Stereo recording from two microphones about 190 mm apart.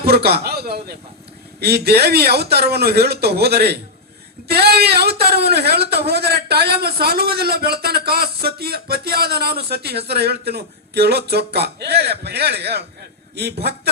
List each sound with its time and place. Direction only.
0.0 s speech: 55° right (ahead or behind)